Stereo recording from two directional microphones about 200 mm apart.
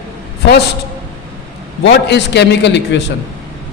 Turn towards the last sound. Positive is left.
turn(degrees=60)  # may be behind; listen again after turning